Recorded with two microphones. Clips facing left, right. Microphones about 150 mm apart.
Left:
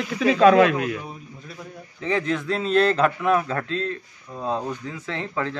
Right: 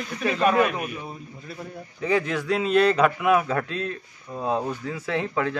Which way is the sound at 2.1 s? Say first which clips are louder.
Right 1 dB; 10° right (ahead or behind).